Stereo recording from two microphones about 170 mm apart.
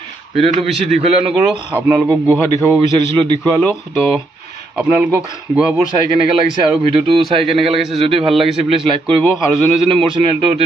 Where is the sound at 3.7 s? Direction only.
Centre (ahead or behind).